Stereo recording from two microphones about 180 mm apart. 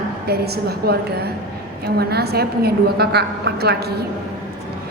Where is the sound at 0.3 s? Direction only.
60° right (ahead or behind).